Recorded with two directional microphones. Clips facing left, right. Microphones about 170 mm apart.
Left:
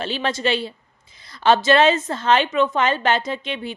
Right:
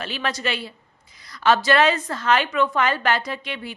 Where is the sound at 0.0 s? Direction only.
25° left (ahead or behind).